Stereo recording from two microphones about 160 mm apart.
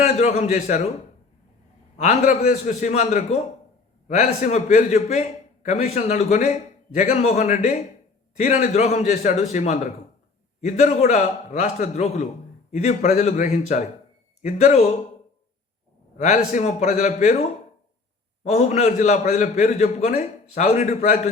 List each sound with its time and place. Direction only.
0.0 s a man's voice: 45° left (ahead or behind)
2.0 s a man's voice: 50° left (ahead or behind)
16.1 s a man's voice: 50° left (ahead or behind)